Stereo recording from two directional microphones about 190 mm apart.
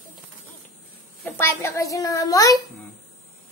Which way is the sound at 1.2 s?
10° left (ahead or behind).